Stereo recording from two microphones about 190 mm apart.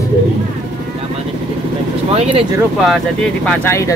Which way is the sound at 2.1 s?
30° right (ahead or behind).